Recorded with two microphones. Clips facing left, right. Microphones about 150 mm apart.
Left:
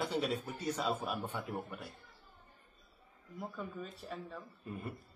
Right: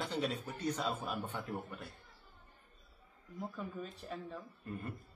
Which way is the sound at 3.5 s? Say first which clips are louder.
Even; centre (ahead or behind).